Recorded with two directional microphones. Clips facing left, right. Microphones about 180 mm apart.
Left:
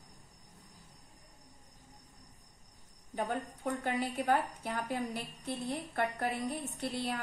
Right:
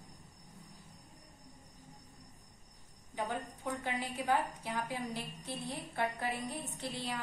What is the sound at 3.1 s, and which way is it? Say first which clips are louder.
A woman's voice: left 3 dB; 50° left (ahead or behind).